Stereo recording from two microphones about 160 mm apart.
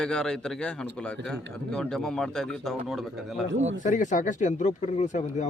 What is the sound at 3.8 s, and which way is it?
Speech, 50° left (ahead or behind).